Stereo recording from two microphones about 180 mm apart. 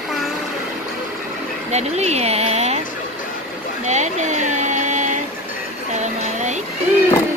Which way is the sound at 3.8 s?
40° right (ahead or behind).